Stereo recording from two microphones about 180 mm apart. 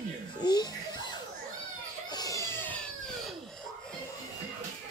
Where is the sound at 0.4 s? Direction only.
25° left (ahead or behind).